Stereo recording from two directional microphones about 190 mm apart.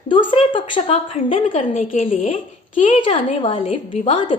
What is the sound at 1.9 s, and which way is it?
Speech, 45° left (ahead or behind).